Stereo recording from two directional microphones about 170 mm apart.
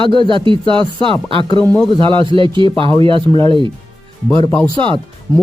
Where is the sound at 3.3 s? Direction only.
25° left (ahead or behind).